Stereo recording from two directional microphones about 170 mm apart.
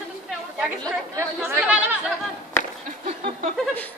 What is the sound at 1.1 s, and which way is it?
Speech, 10° right (ahead or behind).